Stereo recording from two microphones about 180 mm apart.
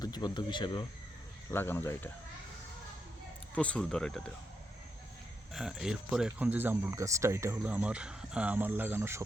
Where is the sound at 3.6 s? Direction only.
5° left (ahead or behind).